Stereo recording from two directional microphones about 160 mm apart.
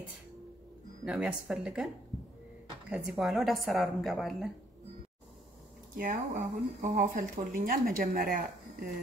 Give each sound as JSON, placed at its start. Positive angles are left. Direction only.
{"t": 1.0, "sound": "a woman's voice", "side_deg": -5}
{"t": 2.9, "sound": "a woman's voice", "side_deg": 0}
{"t": 5.9, "sound": "speech", "side_deg": -55}